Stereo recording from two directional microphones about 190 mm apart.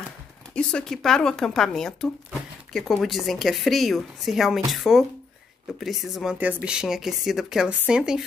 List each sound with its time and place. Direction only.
0.6 s speech: 5° left (ahead or behind)